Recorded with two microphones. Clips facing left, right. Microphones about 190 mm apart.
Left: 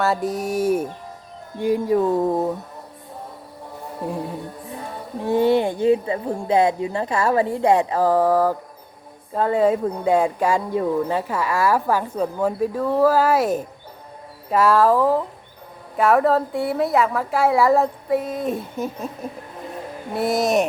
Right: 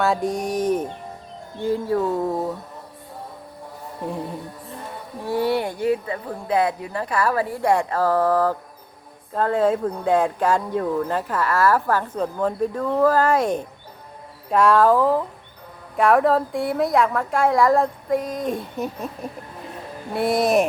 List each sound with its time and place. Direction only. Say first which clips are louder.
0.0 s a woman's voice: even; centre (ahead or behind)
5.2 s a woman's voice: left 4 dB; 20° left (ahead or behind); by 19.1 s centre (ahead or behind)
20.1 s a woman's voice: right 1 dB; centre (ahead or behind)